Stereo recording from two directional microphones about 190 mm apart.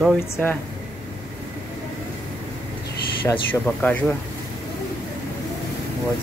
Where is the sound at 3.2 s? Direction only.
15° left (ahead or behind).